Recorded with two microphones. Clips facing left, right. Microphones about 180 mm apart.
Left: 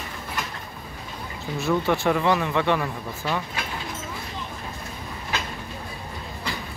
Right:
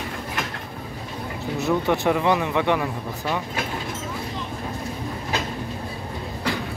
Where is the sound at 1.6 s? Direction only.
20° right (ahead or behind).